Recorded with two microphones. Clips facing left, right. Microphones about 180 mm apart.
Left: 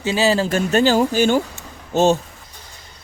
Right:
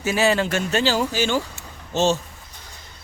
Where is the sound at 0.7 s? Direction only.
50° left (ahead or behind).